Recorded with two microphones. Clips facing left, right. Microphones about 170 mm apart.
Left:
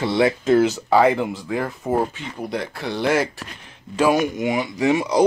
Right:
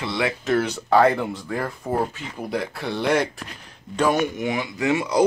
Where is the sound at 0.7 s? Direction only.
5° left (ahead or behind).